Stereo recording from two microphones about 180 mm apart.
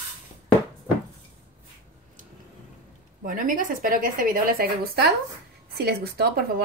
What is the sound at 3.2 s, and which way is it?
A woman's voice, 50° right (ahead or behind).